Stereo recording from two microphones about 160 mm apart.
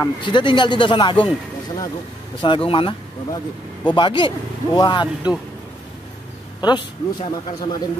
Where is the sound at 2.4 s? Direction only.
30° left (ahead or behind).